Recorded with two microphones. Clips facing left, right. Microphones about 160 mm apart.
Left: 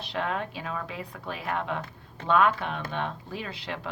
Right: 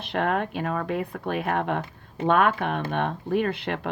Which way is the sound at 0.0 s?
55° right (ahead or behind).